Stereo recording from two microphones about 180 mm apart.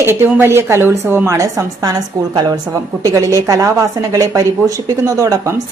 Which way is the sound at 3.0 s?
20° right (ahead or behind).